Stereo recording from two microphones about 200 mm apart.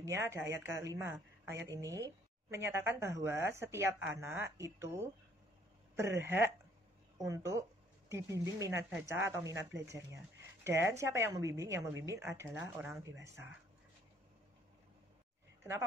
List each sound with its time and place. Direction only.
0.0 s a woman's voice: 15° right (ahead or behind)